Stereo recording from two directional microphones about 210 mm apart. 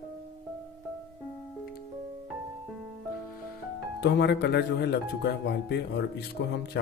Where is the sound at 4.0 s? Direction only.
55° left (ahead or behind).